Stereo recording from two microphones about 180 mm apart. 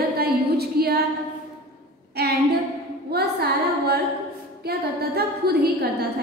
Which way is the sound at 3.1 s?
60° right (ahead or behind).